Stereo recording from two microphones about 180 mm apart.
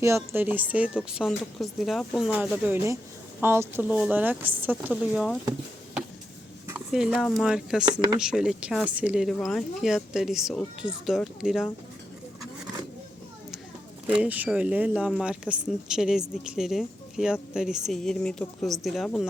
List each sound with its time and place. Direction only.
0.3 s speech: 10° right (ahead or behind)
6.7 s speech: 5° right (ahead or behind)
14.2 s speech: 10° right (ahead or behind)